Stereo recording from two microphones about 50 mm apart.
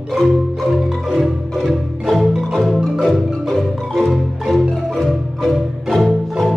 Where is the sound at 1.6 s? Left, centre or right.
Centre.